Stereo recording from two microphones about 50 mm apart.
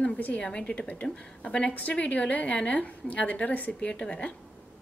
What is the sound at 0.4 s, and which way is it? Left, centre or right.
A woman's voice, centre.